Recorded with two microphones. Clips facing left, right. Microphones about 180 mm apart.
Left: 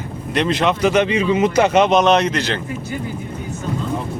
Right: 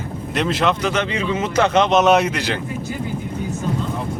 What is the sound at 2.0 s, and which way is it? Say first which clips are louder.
Speech: even; 5° right (ahead or behind).